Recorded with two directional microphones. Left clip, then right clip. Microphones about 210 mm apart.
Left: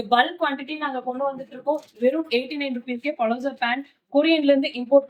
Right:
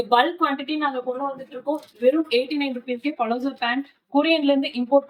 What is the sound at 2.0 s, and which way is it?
A woman's voice, 10° left (ahead or behind).